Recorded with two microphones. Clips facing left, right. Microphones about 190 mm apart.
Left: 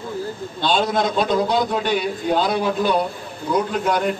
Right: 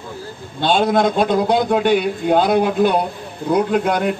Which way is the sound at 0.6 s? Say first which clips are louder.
Right 4 dB; 50° right (ahead or behind).